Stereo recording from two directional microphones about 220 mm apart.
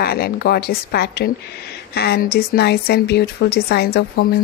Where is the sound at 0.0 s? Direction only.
45° left (ahead or behind).